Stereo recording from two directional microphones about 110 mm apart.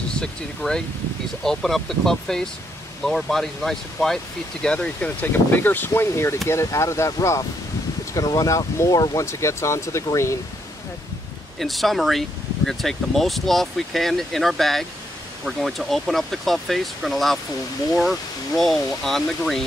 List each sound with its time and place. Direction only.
0.1 s speech: 5° left (ahead or behind); by 10.3 s 25° left (ahead or behind)
11.6 s speech: centre (ahead or behind)